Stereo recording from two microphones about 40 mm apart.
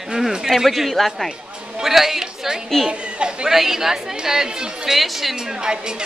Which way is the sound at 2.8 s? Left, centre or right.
Right.